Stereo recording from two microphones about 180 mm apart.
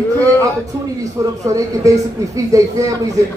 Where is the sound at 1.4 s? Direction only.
20° right (ahead or behind).